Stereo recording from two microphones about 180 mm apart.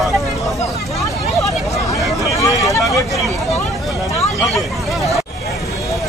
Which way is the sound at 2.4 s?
20° left (ahead or behind).